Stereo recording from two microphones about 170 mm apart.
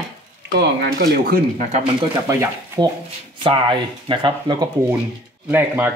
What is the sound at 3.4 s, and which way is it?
Speech, 30° right (ahead or behind).